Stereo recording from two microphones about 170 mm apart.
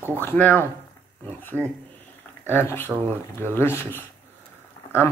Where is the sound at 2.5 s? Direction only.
10° left (ahead or behind).